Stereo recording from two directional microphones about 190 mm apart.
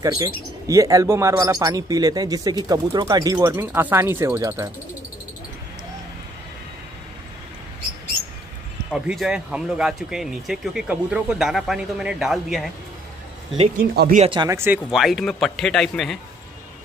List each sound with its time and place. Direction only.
0.7 s speech: 15° right (ahead or behind)
8.9 s speech: centre (ahead or behind)
13.7 s speech: 55° right (ahead or behind)
14.1 s speech: 30° right (ahead or behind)
14.9 s speech: centre (ahead or behind)